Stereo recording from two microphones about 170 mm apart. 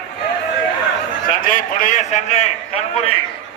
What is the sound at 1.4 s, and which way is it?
A man's voice, 50° left (ahead or behind).